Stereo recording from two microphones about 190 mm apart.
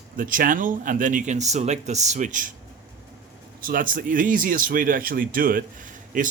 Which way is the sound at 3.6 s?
45° right (ahead or behind).